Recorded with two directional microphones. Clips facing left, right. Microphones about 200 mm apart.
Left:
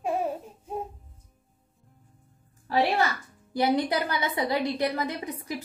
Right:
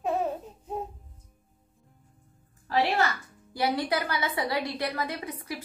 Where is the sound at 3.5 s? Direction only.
20° left (ahead or behind).